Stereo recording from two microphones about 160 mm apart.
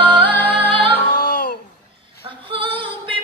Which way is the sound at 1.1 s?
90° left.